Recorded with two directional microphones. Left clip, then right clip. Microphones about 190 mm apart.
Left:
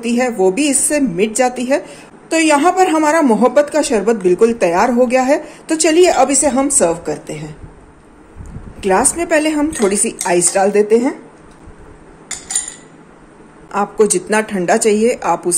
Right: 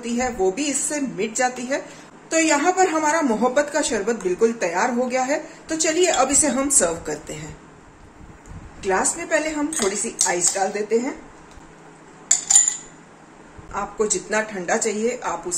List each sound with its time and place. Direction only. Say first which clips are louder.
0.0 s a woman's voice: left 8 dB; 45° left (ahead or behind); by 7.4 s 30° left (ahead or behind)
8.8 s a woman's voice: left 8 dB; 45° left (ahead or behind)
13.7 s a woman's voice: left 10 dB; 50° left (ahead or behind)